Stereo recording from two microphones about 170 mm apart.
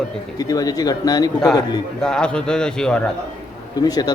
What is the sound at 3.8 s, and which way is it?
Speech, 20° left (ahead or behind).